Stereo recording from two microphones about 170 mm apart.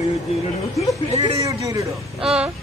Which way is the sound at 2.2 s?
5° right (ahead or behind).